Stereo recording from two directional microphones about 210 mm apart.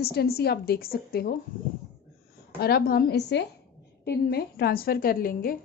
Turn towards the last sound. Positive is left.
turn(degrees=45)  # may be behind; listen again after turning